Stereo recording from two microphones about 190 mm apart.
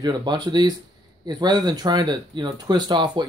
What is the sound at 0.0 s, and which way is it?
Speech, 25° right (ahead or behind).